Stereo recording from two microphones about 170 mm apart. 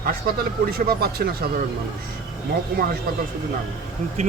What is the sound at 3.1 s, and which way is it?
Speech, 60° right (ahead or behind).